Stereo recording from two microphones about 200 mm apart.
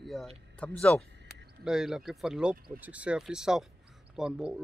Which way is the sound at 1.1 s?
60° right (ahead or behind).